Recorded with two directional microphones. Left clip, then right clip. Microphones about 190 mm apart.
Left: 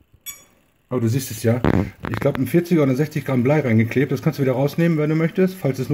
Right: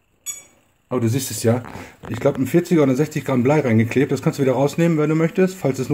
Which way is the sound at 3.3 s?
Centre (ahead or behind).